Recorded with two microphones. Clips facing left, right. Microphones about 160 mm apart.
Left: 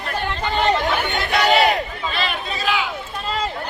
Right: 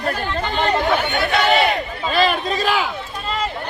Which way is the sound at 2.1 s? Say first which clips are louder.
Right 12 dB; 40° right (ahead or behind).